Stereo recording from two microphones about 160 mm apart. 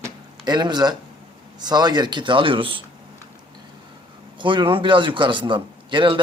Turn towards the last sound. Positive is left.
turn(degrees=-30)  # may be behind; listen again after turning